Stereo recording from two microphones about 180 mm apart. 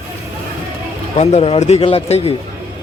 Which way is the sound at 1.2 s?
35° left (ahead or behind).